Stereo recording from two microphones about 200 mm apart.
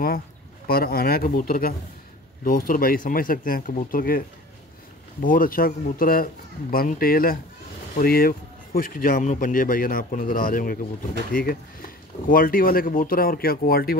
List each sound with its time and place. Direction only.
0.7 s speech: 50° left (ahead or behind)
5.2 s speech: 45° left (ahead or behind)